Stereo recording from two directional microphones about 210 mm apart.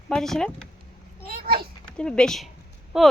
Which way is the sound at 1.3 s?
45° right (ahead or behind).